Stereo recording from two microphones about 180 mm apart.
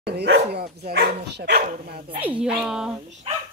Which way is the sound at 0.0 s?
65° right (ahead or behind).